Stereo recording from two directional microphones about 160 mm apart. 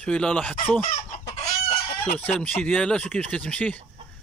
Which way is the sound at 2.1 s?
10° left (ahead or behind).